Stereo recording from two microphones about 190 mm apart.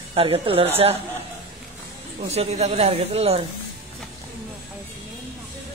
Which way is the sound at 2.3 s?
35° right (ahead or behind).